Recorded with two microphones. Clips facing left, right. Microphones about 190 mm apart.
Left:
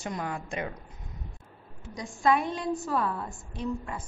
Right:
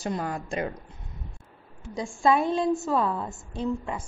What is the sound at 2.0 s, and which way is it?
A woman's voice, 30° right (ahead or behind).